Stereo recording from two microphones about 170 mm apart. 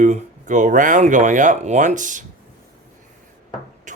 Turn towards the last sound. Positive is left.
turn(degrees=-45)  # may be behind; listen again after turning